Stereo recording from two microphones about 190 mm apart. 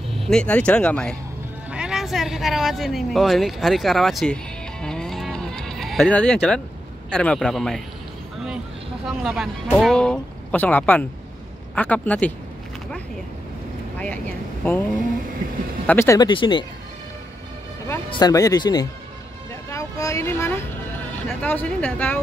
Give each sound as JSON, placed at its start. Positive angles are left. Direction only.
{"t": 0.3, "sound": "speech", "side_deg": 5}
{"t": 1.7, "sound": "speech", "side_deg": -5}
{"t": 4.8, "sound": "sheep", "side_deg": 5}
{"t": 7.1, "sound": "speech", "side_deg": 5}
{"t": 9.0, "sound": "speech", "side_deg": 0}
{"t": 13.9, "sound": "speech", "side_deg": 10}
{"t": 15.9, "sound": "speech", "side_deg": 15}
{"t": 17.8, "sound": "speech", "side_deg": 15}